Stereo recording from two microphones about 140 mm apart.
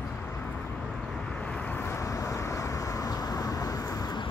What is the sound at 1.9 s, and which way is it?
Vehicle, 25° left (ahead or behind).